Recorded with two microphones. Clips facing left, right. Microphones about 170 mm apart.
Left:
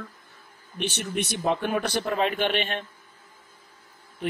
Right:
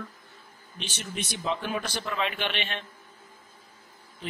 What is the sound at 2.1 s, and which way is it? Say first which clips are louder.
Speech: left 5 dB; 45° left (ahead or behind).